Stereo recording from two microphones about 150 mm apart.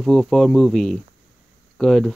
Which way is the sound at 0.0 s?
Centre (ahead or behind).